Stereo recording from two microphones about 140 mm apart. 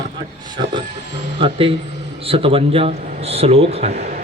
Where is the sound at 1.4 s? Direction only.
40° right (ahead or behind).